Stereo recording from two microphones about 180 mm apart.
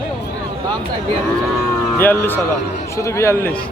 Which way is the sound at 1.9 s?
10° left (ahead or behind).